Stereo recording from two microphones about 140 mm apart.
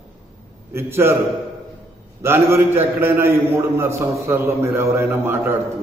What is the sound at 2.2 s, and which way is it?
A man's voice, 15° right (ahead or behind).